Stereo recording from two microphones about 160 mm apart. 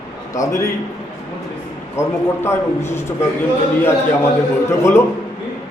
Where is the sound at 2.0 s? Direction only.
15° left (ahead or behind).